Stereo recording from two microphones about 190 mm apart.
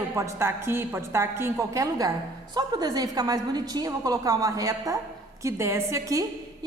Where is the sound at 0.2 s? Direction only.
15° right (ahead or behind).